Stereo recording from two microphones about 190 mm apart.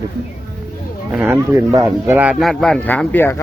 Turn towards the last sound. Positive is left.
turn(degrees=10)  # may be behind; listen again after turning